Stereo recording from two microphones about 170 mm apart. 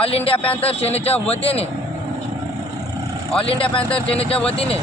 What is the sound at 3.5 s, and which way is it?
Speech, 30° left (ahead or behind).